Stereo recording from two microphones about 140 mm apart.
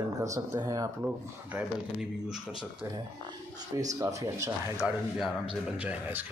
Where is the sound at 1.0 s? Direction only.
10° right (ahead or behind).